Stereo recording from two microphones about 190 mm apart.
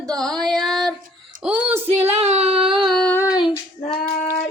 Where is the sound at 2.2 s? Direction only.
35° right (ahead or behind).